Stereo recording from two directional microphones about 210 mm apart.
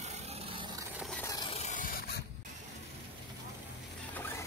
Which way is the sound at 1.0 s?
Centre (ahead or behind).